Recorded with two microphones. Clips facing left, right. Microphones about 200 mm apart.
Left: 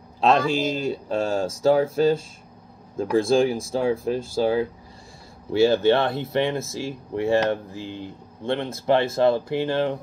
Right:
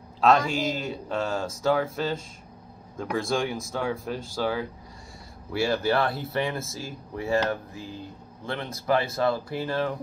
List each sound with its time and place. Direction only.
0.2 s speech: 25° left (ahead or behind)